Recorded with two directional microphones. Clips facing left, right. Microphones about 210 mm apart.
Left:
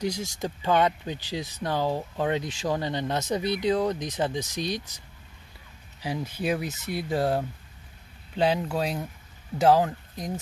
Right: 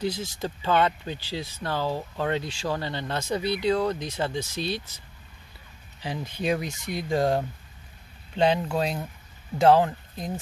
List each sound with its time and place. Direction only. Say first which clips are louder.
0.0 s speech: even; 15° left (ahead or behind)